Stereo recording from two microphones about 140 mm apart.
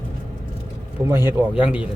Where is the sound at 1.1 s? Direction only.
15° right (ahead or behind).